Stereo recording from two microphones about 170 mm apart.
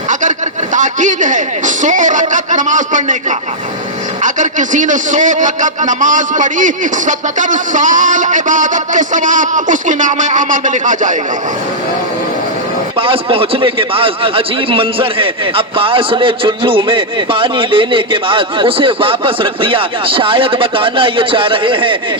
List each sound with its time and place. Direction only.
0.1 s a man's voice: 45° right (ahead or behind)
13.0 s a man's voice: 30° right (ahead or behind)